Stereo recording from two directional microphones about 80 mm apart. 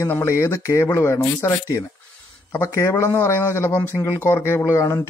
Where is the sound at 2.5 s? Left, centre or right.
Left.